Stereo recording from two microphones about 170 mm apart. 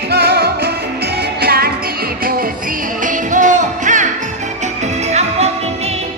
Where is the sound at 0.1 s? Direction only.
70° right (ahead or behind); by 5.5 s 40° right (ahead or behind).